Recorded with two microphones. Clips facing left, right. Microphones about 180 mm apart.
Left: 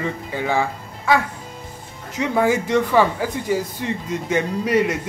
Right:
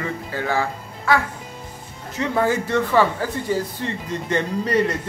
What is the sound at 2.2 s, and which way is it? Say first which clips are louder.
Speech: left 2 dB; 10° left (ahead or behind).